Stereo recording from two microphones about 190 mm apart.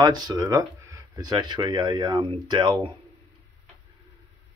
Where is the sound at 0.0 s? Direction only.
20° right (ahead or behind).